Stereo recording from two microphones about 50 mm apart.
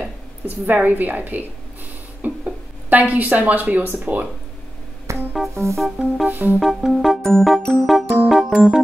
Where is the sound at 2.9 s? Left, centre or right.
Right.